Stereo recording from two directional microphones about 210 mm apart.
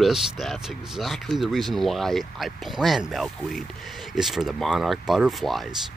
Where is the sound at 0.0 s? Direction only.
Centre (ahead or behind).